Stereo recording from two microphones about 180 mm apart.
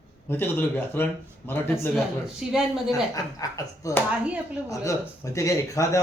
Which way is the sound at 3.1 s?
20° left (ahead or behind).